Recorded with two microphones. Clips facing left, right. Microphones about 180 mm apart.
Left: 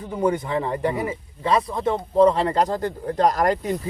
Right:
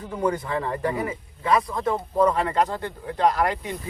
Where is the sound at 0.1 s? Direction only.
20° left (ahead or behind).